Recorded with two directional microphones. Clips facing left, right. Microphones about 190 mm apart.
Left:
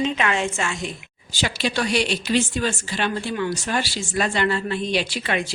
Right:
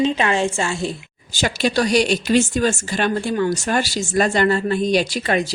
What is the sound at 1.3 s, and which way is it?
A woman's voice, 45° right (ahead or behind).